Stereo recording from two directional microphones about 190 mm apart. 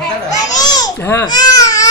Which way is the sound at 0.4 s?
20° left (ahead or behind).